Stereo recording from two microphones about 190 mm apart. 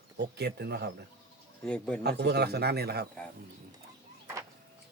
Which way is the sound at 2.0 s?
60° right (ahead or behind).